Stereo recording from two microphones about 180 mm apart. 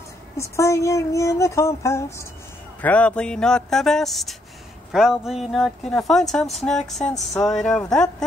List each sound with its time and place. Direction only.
0.4 s speech: 15° left (ahead or behind)